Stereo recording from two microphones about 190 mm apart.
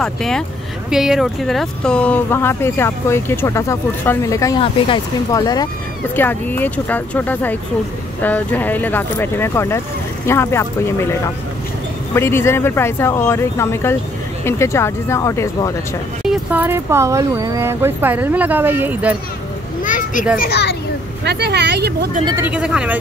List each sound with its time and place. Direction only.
0.0 s speech: centre (ahead or behind); by 5.7 s 20° left (ahead or behind)
6.1 s speech: 10° left (ahead or behind)
12.2 s speech: 15° left (ahead or behind)
16.3 s speech: 10° right (ahead or behind)
19.8 s children playing: 45° left (ahead or behind)
20.3 s a child's voice: 55° left (ahead or behind)
21.2 s speech: 60° right (ahead or behind)
22.2 s speech: 15° right (ahead or behind)